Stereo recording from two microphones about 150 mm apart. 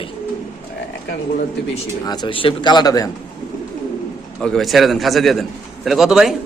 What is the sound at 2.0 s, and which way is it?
Speech, 30° left (ahead or behind).